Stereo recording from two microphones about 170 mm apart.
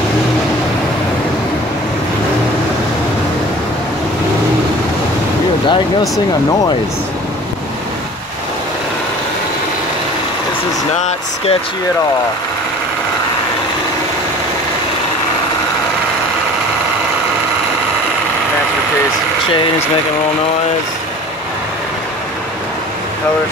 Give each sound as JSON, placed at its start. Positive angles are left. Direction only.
{"t": 5.7, "sound": "speech", "side_deg": 20}
{"t": 11.0, "sound": "speech", "side_deg": 40}